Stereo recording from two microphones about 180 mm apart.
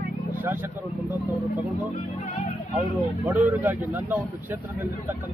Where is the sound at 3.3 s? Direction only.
10° right (ahead or behind).